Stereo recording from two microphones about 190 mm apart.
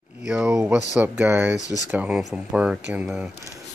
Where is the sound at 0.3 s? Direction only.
5° right (ahead or behind).